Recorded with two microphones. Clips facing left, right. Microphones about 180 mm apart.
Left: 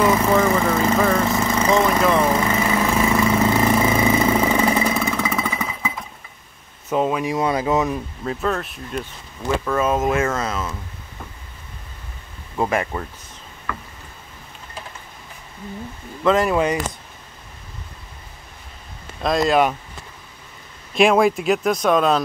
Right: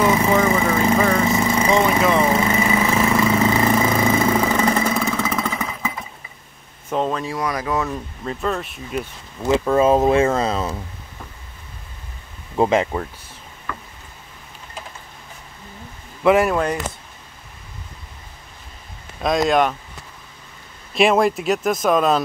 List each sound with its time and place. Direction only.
0.0 s vehicle: 5° right (ahead or behind)
6.9 s a sound: 5° left (ahead or behind)
7.3 s a sound: 25° left (ahead or behind)
8.2 s speech: centre (ahead or behind)
9.5 s speech: 25° right (ahead or behind)
12.5 s speech: 20° right (ahead or behind)
16.3 s speech: 5° right (ahead or behind)
19.2 s speech: centre (ahead or behind)
20.9 s speech: centre (ahead or behind)